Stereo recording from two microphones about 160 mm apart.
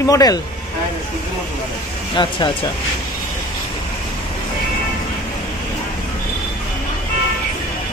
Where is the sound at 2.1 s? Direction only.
30° left (ahead or behind).